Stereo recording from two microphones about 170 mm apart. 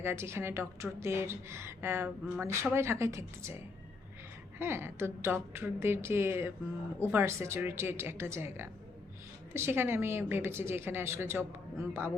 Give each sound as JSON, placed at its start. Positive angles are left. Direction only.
{"t": 0.0, "sound": "a woman's voice", "side_deg": -15}
{"t": 4.5, "sound": "a woman's voice", "side_deg": -15}